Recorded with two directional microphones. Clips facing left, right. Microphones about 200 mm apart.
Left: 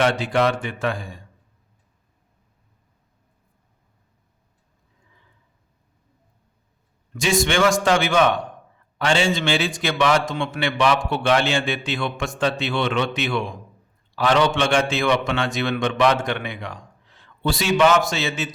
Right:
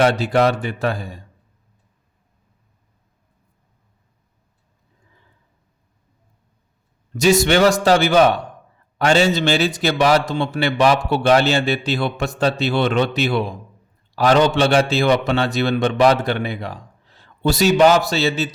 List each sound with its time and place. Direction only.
0.0 s a man's voice: 40° right (ahead or behind)
7.2 s a man's voice: 40° right (ahead or behind)